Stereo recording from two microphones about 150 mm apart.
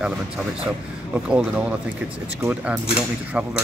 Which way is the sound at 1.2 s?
10° right (ahead or behind).